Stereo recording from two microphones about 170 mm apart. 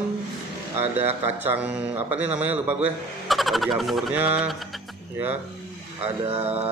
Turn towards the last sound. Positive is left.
turn(degrees=-35)  # may be behind; listen again after turning